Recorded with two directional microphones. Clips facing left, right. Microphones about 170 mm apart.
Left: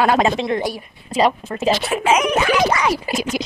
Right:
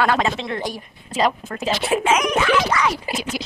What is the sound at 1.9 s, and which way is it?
Speech, 20° right (ahead or behind).